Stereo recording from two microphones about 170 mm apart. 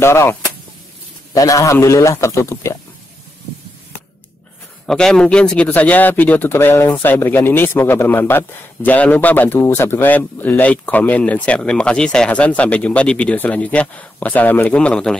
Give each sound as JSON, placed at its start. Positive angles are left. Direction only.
{"t": 0.0, "sound": "a man's voice", "side_deg": 15}
{"t": 4.8, "sound": "a man's voice", "side_deg": 5}